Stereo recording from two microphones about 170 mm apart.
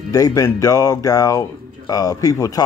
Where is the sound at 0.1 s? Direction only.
20° left (ahead or behind).